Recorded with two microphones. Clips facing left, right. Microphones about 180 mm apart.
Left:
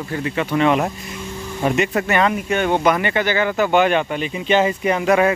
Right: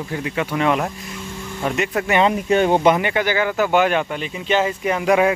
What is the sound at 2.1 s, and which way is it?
Speech, 25° right (ahead or behind).